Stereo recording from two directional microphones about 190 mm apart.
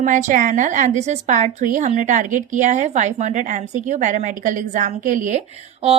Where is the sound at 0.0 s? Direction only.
40° right (ahead or behind).